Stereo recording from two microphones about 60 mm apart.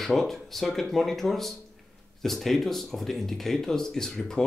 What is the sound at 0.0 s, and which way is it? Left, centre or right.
Speech, centre.